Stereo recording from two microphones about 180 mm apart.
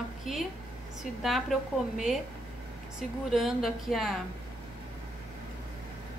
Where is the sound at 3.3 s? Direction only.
Centre (ahead or behind).